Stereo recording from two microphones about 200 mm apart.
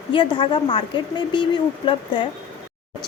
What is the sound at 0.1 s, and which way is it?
A woman's voice, 25° left (ahead or behind).